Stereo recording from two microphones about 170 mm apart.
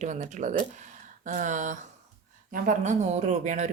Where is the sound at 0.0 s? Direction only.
45° right (ahead or behind).